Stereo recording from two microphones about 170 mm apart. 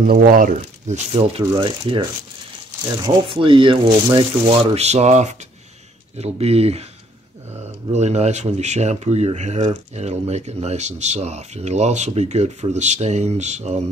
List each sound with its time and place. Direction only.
0.0 s speech: 55° right (ahead or behind); by 6.9 s 35° right (ahead or behind)
7.9 s speech: 40° right (ahead or behind)